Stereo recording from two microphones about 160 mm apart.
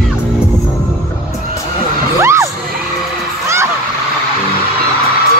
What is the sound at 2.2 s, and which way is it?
Children shouting, 15° right (ahead or behind).